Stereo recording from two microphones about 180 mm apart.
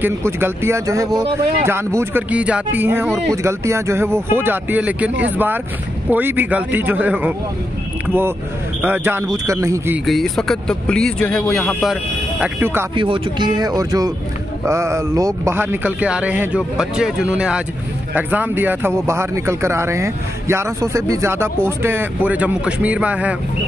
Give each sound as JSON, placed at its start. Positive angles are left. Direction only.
{"t": 0.0, "sound": "speech", "side_deg": -10}
{"t": 10.0, "sound": "speech", "side_deg": 0}
{"t": 12.9, "sound": "speech", "side_deg": -30}